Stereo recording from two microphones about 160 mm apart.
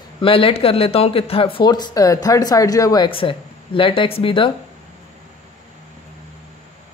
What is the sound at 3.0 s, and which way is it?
A man's voice, 35° left (ahead or behind).